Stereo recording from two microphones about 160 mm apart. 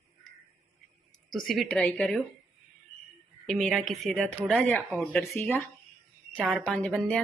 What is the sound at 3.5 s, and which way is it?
Speech, 5° left (ahead or behind).